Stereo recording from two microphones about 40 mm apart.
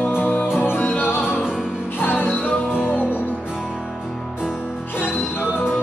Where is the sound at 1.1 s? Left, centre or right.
Left.